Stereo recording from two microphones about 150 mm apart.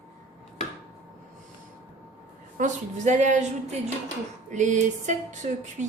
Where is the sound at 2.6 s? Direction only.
50° right (ahead or behind).